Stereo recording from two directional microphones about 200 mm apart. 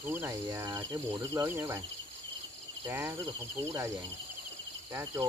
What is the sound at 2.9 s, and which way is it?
Speech, 10° right (ahead or behind).